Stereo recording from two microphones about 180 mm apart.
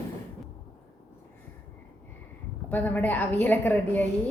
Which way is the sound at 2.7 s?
10° left (ahead or behind).